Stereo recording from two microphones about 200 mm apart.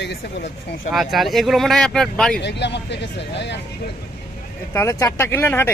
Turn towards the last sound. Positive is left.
turn(degrees=10)  # may be behind; listen again after turning